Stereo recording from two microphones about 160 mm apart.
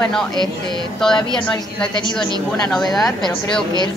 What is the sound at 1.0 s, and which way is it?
A woman's voice, 5° left (ahead or behind).